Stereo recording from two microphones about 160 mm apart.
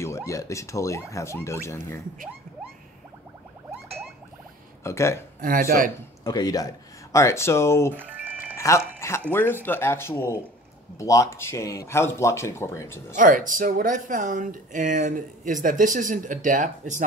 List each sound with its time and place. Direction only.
0.0 s speech: 20° left (ahead or behind)
4.8 s speech: 15° left (ahead or behind)
5.4 s speech: 65° right (ahead or behind)
6.2 s speech: 25° left (ahead or behind)
7.9 s music: 10° right (ahead or behind)
8.5 s speech: 15° left (ahead or behind)
13.1 s speech: 55° right (ahead or behind)